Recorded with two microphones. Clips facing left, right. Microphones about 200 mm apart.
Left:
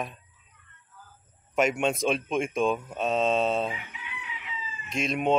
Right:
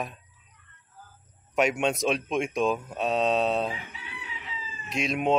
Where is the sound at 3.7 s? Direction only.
35° right (ahead or behind).